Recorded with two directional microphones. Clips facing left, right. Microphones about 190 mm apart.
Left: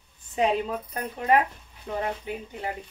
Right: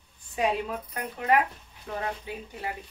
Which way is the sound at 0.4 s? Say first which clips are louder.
Left 3 dB; 25° left (ahead or behind).